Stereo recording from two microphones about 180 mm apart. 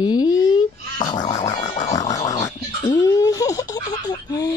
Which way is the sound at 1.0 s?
20° left (ahead or behind).